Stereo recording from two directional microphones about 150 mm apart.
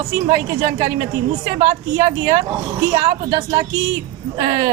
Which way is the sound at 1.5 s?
55° right (ahead or behind).